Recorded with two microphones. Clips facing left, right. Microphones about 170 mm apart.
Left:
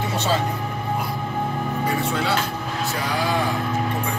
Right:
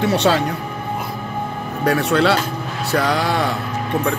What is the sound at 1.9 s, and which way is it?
Speech, 75° right (ahead or behind).